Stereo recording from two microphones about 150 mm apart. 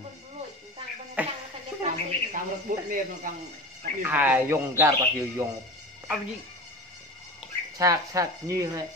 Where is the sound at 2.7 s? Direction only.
65° right (ahead or behind).